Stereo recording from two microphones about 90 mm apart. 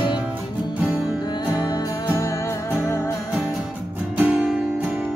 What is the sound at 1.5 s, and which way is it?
Music, 40° left (ahead or behind).